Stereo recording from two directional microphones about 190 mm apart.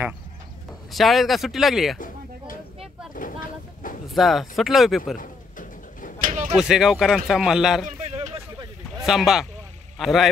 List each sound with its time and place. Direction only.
0.9 s speech: centre (ahead or behind)
2.0 s a sound: 45° left (ahead or behind)
3.2 s vehicle: 45° left (ahead or behind)
4.1 s speech: centre (ahead or behind)
5.1 s pigeon: 45° left (ahead or behind)
6.2 s a sound: 45° right (ahead or behind)
6.5 s speech: 5° right (ahead or behind)
7.8 s a sound: 35° right (ahead or behind)
9.0 s a man's voice: centre (ahead or behind)